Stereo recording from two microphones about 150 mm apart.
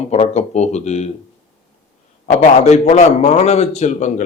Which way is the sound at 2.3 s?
50° left (ahead or behind).